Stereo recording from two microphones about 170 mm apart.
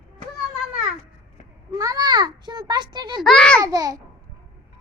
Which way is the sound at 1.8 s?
20° right (ahead or behind).